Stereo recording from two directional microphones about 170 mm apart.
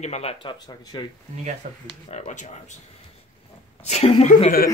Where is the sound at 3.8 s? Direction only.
40° left (ahead or behind).